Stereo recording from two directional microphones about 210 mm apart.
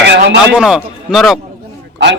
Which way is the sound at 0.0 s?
55° right (ahead or behind).